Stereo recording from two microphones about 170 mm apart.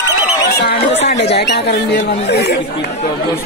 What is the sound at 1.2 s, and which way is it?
Speech, 80° left.